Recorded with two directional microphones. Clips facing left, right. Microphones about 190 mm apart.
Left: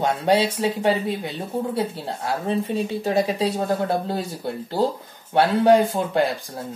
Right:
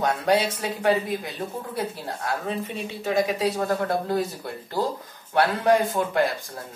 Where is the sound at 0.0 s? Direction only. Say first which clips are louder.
Left 2 dB; 25° left (ahead or behind).